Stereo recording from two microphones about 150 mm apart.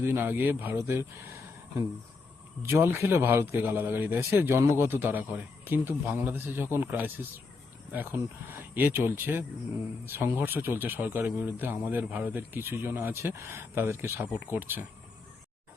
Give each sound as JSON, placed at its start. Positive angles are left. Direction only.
{"t": 0.0, "sound": "speech", "side_deg": -15}
{"t": 2.6, "sound": "speech", "side_deg": -15}